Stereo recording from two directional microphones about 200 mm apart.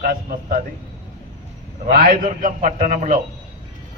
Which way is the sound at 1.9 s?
45° right (ahead or behind).